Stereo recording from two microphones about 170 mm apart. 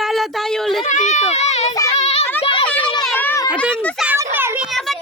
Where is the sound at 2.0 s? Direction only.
40° left (ahead or behind).